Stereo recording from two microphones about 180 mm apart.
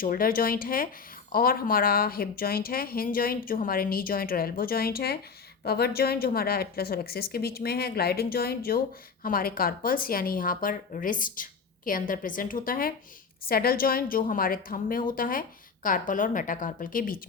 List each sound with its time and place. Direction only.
0.0 s a woman's voice: 50° left (ahead or behind)